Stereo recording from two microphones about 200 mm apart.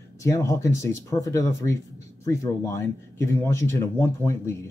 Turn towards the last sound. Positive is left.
turn(degrees=15)  # may be behind; listen again after turning